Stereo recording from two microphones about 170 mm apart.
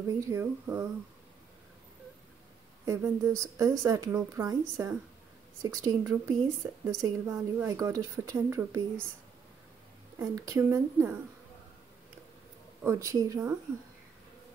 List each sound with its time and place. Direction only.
0.2 s a woman's voice: 15° right (ahead or behind)
2.8 s a woman's voice: 20° right (ahead or behind)
10.1 s a woman's voice: 20° right (ahead or behind)
12.8 s a woman's voice: 15° right (ahead or behind)